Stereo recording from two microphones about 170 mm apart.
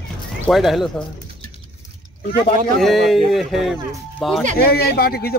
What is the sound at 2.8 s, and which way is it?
Speech, centre (ahead or behind).